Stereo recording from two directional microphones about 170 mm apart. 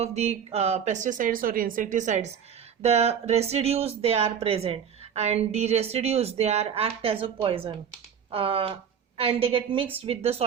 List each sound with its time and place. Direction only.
0.0 s speech: 40° right (ahead or behind)